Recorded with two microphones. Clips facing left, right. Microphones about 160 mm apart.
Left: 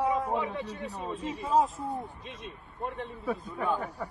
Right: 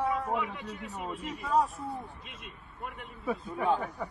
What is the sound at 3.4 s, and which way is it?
Speech, 20° right (ahead or behind).